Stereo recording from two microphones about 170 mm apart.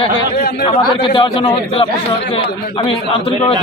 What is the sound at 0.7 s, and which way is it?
A man's voice, 30° left (ahead or behind).